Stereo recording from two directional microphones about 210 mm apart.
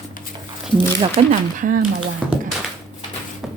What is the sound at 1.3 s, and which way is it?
Speech, 40° right (ahead or behind).